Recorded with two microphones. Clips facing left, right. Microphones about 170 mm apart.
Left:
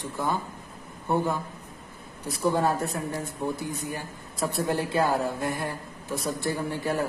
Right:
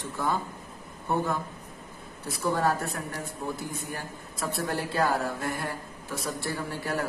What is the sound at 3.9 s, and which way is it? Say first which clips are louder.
Speech: left 1 dB; 20° left (ahead or behind).